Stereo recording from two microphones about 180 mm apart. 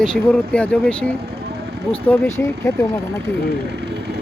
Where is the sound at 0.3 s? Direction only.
5° left (ahead or behind).